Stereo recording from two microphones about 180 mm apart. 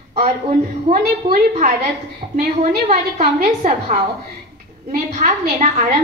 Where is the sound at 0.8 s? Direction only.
40° right (ahead or behind).